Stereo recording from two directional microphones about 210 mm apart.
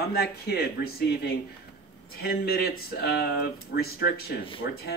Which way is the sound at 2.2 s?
45° left (ahead or behind).